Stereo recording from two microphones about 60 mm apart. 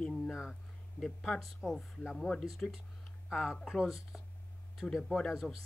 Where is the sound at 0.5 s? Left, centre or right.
Centre.